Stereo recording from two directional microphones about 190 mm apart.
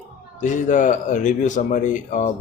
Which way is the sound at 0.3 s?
40° left (ahead or behind).